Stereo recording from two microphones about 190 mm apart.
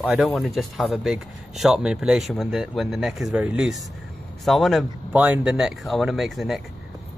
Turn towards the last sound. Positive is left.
turn(degrees=0)  # may be behind; listen again after turning